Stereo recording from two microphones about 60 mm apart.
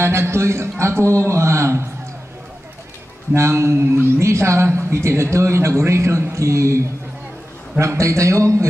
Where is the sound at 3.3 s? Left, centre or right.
Right.